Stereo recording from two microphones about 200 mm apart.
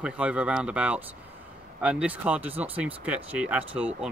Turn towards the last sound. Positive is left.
turn(degrees=-5)  # may be behind; listen again after turning